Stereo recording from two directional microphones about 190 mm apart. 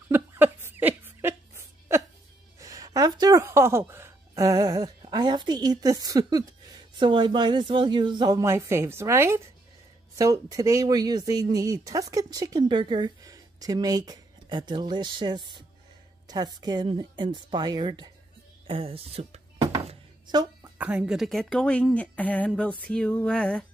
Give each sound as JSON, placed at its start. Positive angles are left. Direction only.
{"t": 0.1, "sound": "chuckle", "side_deg": -10}
{"t": 2.6, "sound": "a woman's voice", "side_deg": -20}
{"t": 19.9, "sound": "a sound", "side_deg": -20}
{"t": 20.7, "sound": "a woman's voice", "side_deg": -5}